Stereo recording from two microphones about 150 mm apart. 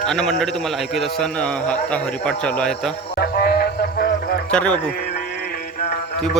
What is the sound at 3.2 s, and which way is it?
Music, 90° left.